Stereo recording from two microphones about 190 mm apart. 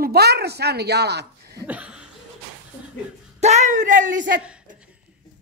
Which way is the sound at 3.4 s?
35° right (ahead or behind).